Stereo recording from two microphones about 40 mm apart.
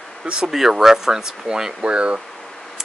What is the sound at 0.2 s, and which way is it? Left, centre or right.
Speech, centre.